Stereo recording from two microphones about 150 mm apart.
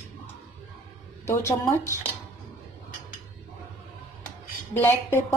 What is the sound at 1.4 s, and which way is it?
Speech, 20° left (ahead or behind).